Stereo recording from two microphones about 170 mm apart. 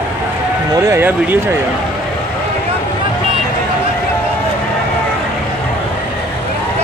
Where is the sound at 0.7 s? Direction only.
15° right (ahead or behind).